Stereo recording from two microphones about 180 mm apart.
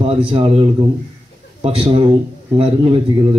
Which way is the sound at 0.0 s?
30° right (ahead or behind).